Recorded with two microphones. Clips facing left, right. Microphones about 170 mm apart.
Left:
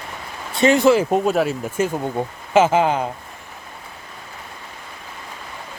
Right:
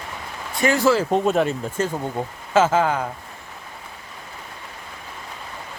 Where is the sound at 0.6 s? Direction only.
20° left (ahead or behind).